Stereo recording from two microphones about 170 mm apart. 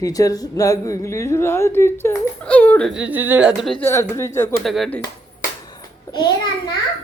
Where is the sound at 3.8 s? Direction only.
15° left (ahead or behind).